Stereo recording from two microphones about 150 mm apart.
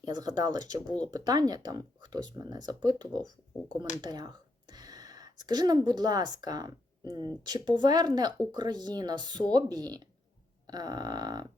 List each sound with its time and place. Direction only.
0.0 s speech: 25° right (ahead or behind)